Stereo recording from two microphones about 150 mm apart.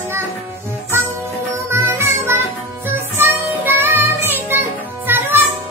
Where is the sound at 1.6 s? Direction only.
15° right (ahead or behind).